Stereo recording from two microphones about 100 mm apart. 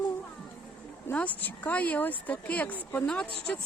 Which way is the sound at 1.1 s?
15° left (ahead or behind).